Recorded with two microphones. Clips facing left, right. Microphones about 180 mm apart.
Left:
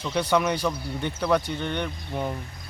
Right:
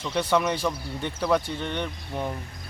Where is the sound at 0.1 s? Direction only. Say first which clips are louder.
Left 1 dB; centre (ahead or behind).